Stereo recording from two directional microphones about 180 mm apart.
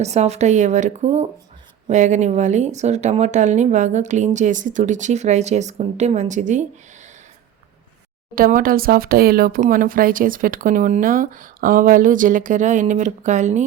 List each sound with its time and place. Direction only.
0.0 s speech: 40° right (ahead or behind)
8.4 s speech: 50° right (ahead or behind)